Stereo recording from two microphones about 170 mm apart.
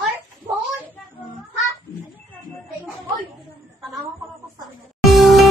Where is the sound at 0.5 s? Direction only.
25° right (ahead or behind).